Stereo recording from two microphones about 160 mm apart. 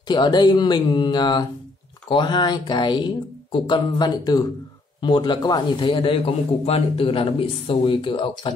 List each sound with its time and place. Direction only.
0.1 s a man's voice: 25° left (ahead or behind)